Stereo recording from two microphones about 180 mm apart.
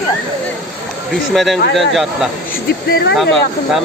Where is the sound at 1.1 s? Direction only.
Centre (ahead or behind).